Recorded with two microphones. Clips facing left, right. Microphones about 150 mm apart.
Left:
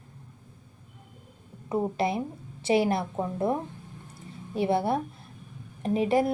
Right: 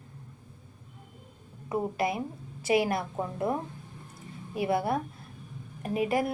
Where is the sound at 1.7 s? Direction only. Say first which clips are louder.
Left 2 dB; 25° left (ahead or behind).